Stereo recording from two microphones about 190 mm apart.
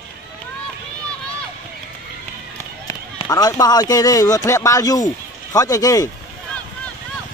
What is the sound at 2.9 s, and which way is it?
A man's voice, 20° left (ahead or behind).